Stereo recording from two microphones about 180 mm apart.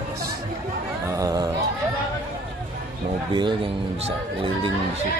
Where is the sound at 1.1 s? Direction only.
20° right (ahead or behind).